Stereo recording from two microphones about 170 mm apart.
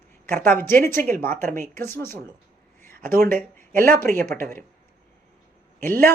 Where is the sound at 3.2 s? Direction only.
10° left (ahead or behind).